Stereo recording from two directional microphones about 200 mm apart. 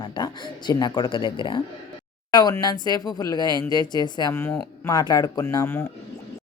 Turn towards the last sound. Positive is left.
turn(degrees=15)  # may be behind; listen again after turning